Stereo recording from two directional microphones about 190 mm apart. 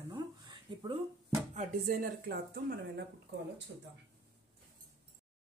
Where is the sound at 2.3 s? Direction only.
55° right (ahead or behind).